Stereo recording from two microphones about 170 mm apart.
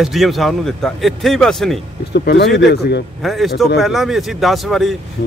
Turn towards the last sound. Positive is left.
turn(degrees=0)  # may be behind; listen again after turning